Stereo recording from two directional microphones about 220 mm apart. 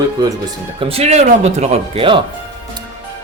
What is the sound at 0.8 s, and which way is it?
Speech, 25° right (ahead or behind).